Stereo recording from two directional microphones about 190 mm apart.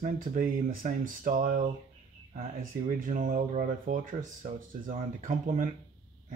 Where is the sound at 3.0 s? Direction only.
45° right (ahead or behind).